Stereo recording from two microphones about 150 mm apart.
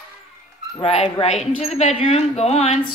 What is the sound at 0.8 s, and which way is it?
Speech, 45° left (ahead or behind).